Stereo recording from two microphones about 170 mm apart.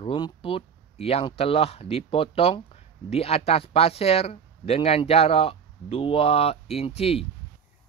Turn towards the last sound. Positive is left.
turn(degrees=35)  # may be behind; listen again after turning